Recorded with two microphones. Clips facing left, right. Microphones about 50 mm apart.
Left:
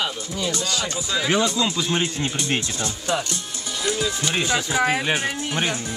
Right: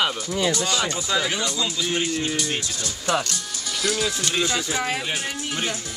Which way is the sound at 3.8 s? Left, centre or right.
Left.